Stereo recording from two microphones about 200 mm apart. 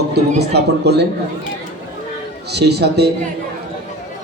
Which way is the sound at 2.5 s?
55° right (ahead or behind).